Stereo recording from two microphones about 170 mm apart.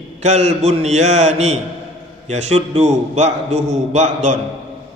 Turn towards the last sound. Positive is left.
turn(degrees=-45)  # may be behind; listen again after turning